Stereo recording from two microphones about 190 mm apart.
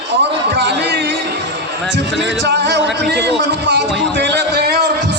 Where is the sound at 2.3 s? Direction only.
65° right (ahead or behind).